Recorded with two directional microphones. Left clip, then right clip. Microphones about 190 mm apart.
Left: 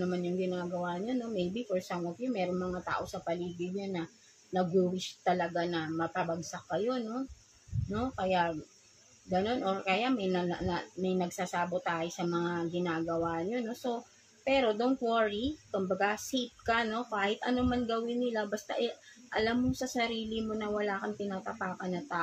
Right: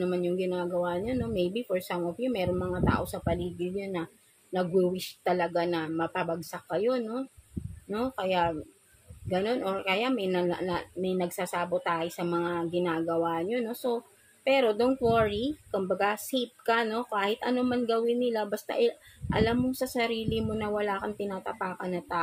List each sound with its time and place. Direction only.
0.0 s speech: 50° right (ahead or behind)